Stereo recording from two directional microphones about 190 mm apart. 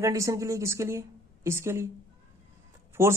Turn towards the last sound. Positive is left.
turn(degrees=-15)  # may be behind; listen again after turning